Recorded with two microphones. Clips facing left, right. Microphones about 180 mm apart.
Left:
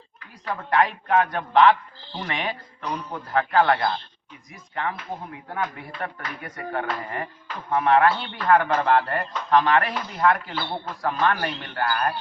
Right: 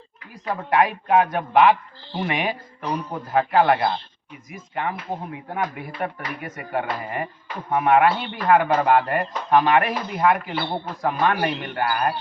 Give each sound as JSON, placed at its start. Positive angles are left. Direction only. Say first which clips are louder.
{"t": 0.4, "sound": "a man's voice", "louder": "right 2 dB", "side_deg": -20}